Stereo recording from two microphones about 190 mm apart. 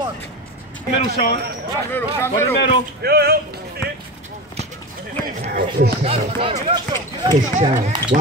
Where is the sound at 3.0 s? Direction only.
55° right (ahead or behind).